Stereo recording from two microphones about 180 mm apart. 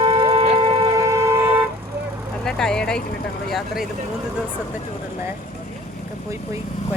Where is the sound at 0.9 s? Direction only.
15° right (ahead or behind).